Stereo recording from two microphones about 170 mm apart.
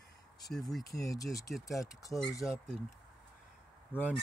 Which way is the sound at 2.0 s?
20° left (ahead or behind).